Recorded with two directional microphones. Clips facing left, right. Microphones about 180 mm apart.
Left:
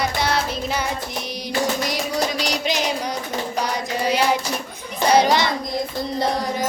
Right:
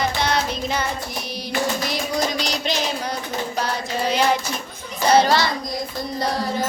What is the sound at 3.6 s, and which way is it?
Child singing, 10° left (ahead or behind).